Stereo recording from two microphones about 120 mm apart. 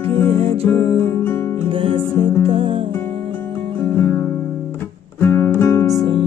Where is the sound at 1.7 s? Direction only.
50° right (ahead or behind).